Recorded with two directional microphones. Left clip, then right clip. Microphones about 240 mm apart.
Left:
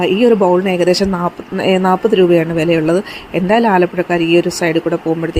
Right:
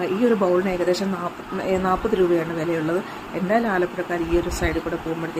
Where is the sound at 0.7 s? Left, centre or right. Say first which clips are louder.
Left 9 dB; left.